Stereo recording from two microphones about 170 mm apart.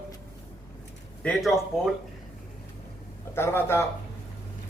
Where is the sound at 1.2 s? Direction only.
5° left (ahead or behind).